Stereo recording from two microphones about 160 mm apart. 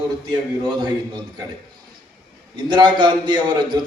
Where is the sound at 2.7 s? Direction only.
30° right (ahead or behind).